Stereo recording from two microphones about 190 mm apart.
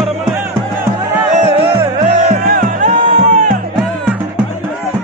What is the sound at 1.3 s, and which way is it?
Music, 35° right (ahead or behind).